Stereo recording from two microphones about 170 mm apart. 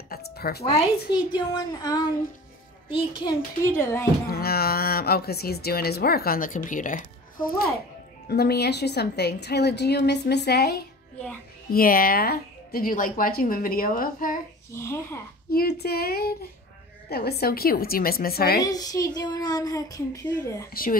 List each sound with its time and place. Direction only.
0.1 s a sound: 65° left (ahead or behind)
1.1 s speech: 25° left (ahead or behind)
3.3 s speech: 15° left (ahead or behind)
4.3 s a woman's voice: 65° left (ahead or behind)
14.7 s speech: 15° left (ahead or behind)
15.5 s speech: 65° left (ahead or behind)
18.6 s speech: 20° left (ahead or behind)
20.7 s speech: 55° left (ahead or behind)